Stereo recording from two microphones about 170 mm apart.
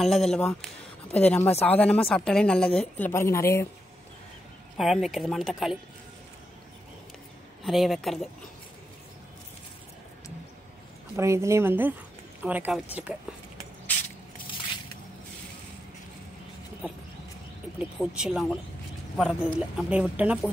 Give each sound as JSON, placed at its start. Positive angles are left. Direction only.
{"t": 0.0, "sound": "speech", "side_deg": 0}
{"t": 4.7, "sound": "speech", "side_deg": 0}
{"t": 7.6, "sound": "speech", "side_deg": 0}
{"t": 11.1, "sound": "a woman's voice", "side_deg": -15}
{"t": 17.7, "sound": "speech", "side_deg": -5}